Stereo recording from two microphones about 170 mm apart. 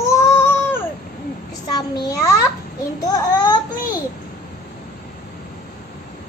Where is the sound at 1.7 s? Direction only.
20° left (ahead or behind).